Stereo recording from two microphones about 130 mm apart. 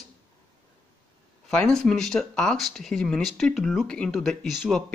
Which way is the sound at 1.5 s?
5° left (ahead or behind).